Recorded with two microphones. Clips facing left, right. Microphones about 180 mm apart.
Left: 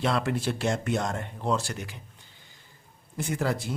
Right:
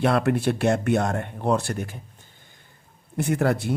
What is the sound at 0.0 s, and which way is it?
Speech, 60° right (ahead or behind).